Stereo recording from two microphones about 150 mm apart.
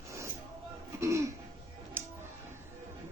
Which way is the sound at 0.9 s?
20° right (ahead or behind).